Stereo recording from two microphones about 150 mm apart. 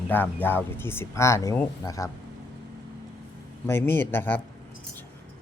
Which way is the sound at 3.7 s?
15° left (ahead or behind).